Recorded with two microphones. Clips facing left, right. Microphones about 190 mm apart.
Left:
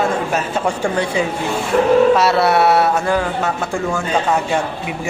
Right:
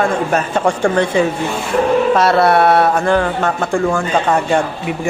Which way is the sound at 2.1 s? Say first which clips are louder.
Right 2 dB; 50° right (ahead or behind).